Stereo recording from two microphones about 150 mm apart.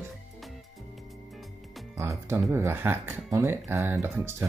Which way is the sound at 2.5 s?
15° right (ahead or behind).